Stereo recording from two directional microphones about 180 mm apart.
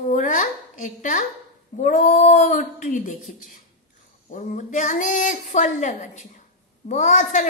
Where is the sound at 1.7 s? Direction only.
45° left (ahead or behind).